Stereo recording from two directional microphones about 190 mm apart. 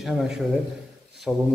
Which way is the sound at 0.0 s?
Centre (ahead or behind).